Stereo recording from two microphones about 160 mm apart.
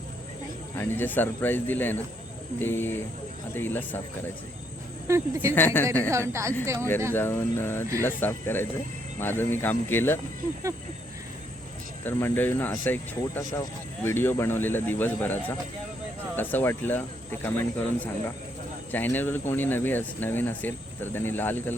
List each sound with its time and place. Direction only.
0.8 s speech: 10° left (ahead or behind)
5.0 s speech: 20° right (ahead or behind)
5.5 s speech: 10° left (ahead or behind)
6.1 s speech: 15° right (ahead or behind)
6.7 s speech: 15° left (ahead or behind)
12.0 s speech: 10° left (ahead or behind)